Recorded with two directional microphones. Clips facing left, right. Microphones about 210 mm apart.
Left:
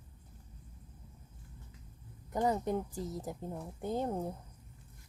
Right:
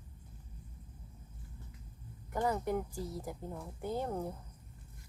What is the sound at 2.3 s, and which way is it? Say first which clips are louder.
Speech: left 2 dB; 20° left (ahead or behind).